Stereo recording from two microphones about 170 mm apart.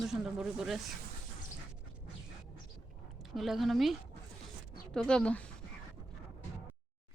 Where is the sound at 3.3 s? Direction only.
Centre (ahead or behind).